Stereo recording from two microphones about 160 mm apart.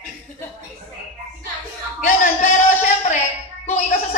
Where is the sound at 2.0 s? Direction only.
50° left (ahead or behind).